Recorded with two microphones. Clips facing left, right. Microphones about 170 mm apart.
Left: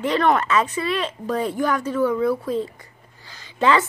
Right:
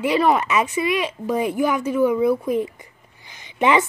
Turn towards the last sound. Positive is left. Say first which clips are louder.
# right 1 dB
turn(degrees=-20)  # may be behind; listen again after turning